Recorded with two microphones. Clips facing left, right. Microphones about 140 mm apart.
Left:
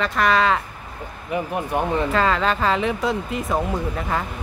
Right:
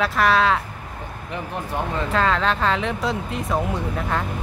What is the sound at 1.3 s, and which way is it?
Speech, 15° left (ahead or behind).